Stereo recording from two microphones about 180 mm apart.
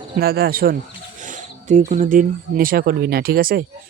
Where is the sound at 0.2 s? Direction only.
60° right (ahead or behind).